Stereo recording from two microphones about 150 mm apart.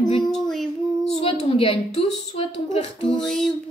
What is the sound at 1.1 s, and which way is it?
A woman's voice, 40° left (ahead or behind).